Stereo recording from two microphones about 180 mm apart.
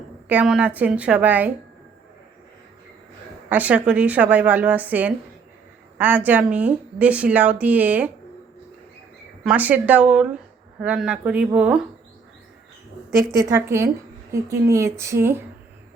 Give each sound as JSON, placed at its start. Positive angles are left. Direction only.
{"t": 0.3, "sound": "a woman's voice", "side_deg": -5}
{"t": 3.5, "sound": "a woman's voice", "side_deg": -10}
{"t": 9.4, "sound": "a woman's voice", "side_deg": -5}
{"t": 13.5, "sound": "a woman's voice", "side_deg": -15}